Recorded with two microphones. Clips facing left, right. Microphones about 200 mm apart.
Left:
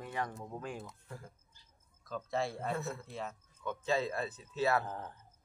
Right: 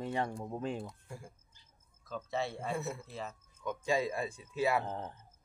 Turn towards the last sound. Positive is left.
turn(degrees=-20)  # may be behind; listen again after turning